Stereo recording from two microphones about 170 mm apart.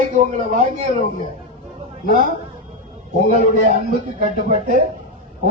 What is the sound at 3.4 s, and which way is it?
A man's voice, 45° right (ahead or behind).